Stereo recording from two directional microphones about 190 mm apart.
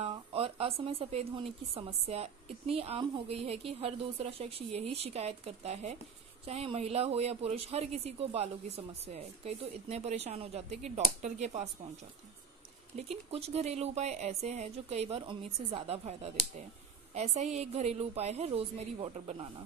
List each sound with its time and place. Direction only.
0.0 s speech: 30° right (ahead or behind)
12.9 s speech: 30° right (ahead or behind)